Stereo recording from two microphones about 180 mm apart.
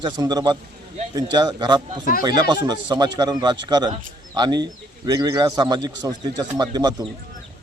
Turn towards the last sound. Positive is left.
turn(degrees=-20)  # may be behind; listen again after turning